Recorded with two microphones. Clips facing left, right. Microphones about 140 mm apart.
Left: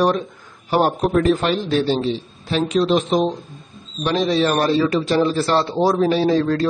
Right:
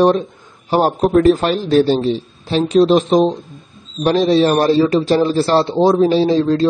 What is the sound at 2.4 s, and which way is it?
A man's voice, 35° right (ahead or behind).